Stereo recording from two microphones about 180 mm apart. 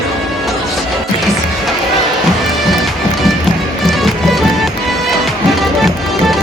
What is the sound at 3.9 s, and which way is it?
Music, centre (ahead or behind).